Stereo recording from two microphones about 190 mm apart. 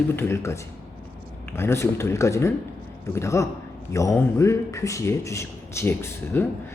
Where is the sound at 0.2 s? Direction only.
15° left (ahead or behind).